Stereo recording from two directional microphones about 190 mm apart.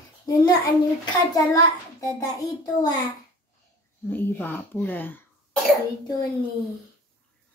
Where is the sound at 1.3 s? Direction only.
15° left (ahead or behind).